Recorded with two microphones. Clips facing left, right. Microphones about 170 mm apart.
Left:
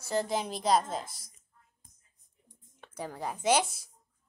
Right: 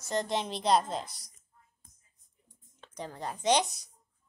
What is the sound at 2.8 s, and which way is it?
Speech, 10° left (ahead or behind).